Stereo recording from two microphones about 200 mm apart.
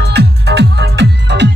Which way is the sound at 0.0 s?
55° right (ahead or behind).